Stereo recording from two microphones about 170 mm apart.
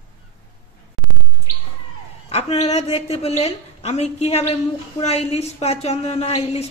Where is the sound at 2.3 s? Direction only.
40° left (ahead or behind).